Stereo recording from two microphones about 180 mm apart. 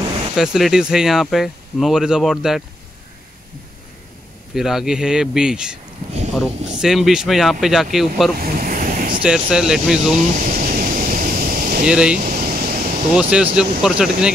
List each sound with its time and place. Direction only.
0.4 s speech: centre (ahead or behind)
4.6 s speech: centre (ahead or behind)
6.8 s speech: 5° right (ahead or behind)
8.4 s waves: 55° right (ahead or behind)
9.2 s speech: 5° right (ahead or behind)
10.1 s a sound: 45° right (ahead or behind)
11.8 s speech: 5° right (ahead or behind)
12.2 s a sound: 50° right (ahead or behind)
13.1 s speech: 5° right (ahead or behind)